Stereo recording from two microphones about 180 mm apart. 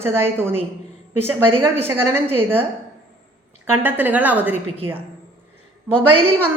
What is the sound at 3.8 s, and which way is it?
Speech, 10° right (ahead or behind).